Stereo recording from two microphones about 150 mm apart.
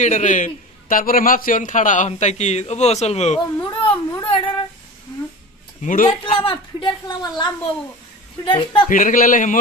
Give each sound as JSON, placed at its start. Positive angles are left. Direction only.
{"t": 0.0, "sound": "a man's voice", "side_deg": 55}
{"t": 3.7, "sound": "a sound", "side_deg": 35}
{"t": 4.2, "sound": "child singing", "side_deg": 35}
{"t": 5.8, "sound": "a man's voice", "side_deg": 60}
{"t": 6.0, "sound": "a woman's voice", "side_deg": 35}
{"t": 8.5, "sound": "a woman's voice", "side_deg": 35}
{"t": 8.8, "sound": "a man's voice", "side_deg": 60}